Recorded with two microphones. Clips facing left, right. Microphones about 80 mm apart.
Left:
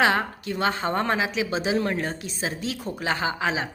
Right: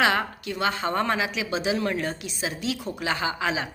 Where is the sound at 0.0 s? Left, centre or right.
Left.